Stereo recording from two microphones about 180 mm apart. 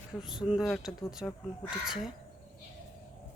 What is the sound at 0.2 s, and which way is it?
Speech, centre (ahead or behind).